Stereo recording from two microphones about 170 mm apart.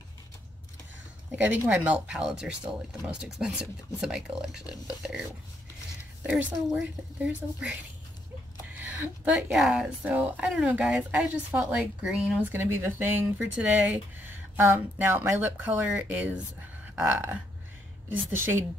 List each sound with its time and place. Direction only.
1.3 s speech: 10° right (ahead or behind)
6.2 s speech: 5° right (ahead or behind)
8.7 s speech: 10° right (ahead or behind)
16.9 s a sound: 10° right (ahead or behind)